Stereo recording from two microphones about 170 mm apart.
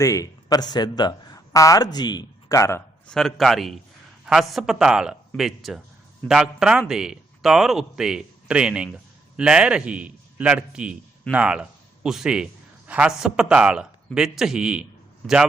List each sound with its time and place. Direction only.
0.0 s speech: 20° left (ahead or behind)
3.1 s a man's voice: 5° left (ahead or behind)